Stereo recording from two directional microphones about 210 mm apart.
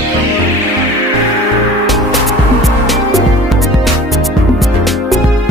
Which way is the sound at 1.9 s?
Centre (ahead or behind).